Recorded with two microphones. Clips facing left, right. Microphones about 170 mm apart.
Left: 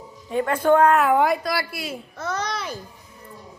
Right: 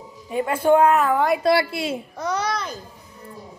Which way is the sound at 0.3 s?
10° right (ahead or behind).